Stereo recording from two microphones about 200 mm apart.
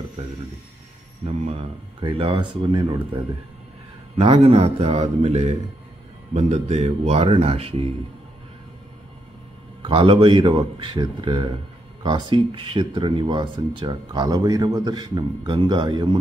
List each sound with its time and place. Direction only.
1.2 s speech: 30° right (ahead or behind)
4.2 s speech: 25° right (ahead or behind)
9.8 s speech: 25° right (ahead or behind)